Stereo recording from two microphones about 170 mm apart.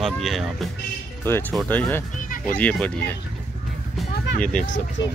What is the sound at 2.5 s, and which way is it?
Speech, 10° left (ahead or behind).